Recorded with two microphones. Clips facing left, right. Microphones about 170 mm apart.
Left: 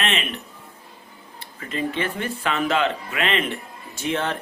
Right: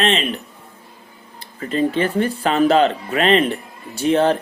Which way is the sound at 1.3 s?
35° right (ahead or behind).